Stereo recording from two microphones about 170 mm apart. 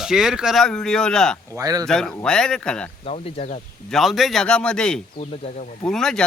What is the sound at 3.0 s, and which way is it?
Speech, 35° left (ahead or behind).